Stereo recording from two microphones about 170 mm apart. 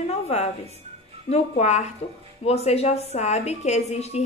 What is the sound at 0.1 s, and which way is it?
Music, 40° left (ahead or behind).